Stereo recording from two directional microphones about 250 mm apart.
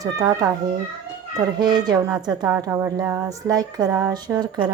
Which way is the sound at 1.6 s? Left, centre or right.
Centre.